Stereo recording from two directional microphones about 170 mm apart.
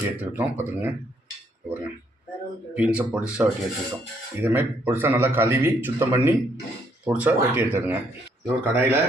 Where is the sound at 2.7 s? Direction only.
10° right (ahead or behind).